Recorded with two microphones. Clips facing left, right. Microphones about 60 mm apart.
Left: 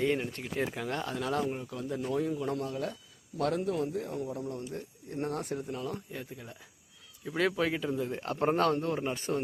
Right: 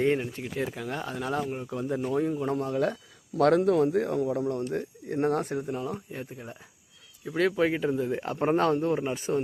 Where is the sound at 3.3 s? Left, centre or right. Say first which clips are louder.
Right 9 dB; right.